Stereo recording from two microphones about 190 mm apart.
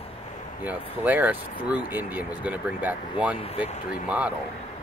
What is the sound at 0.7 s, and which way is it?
Speech, 10° right (ahead or behind).